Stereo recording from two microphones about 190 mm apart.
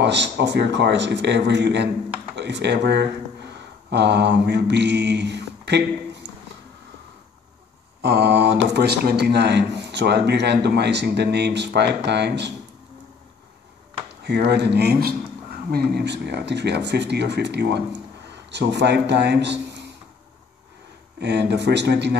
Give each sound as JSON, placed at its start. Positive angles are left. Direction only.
{"t": 0.0, "sound": "speech", "side_deg": -65}
{"t": 8.0, "sound": "speech", "side_deg": -60}
{"t": 14.2, "sound": "speech", "side_deg": -60}
{"t": 21.2, "sound": "speech", "side_deg": -65}